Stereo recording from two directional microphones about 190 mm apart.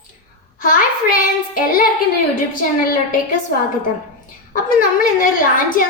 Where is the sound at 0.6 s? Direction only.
45° left (ahead or behind).